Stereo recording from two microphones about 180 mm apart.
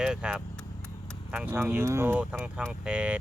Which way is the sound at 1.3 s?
5° right (ahead or behind).